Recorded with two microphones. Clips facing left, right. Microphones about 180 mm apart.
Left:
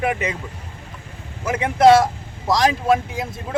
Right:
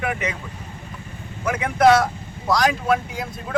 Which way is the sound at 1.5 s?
25° left (ahead or behind).